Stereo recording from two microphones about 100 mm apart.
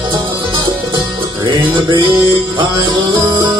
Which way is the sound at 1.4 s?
55° right (ahead or behind).